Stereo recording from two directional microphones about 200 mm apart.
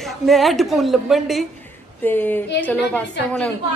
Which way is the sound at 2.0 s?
10° left (ahead or behind).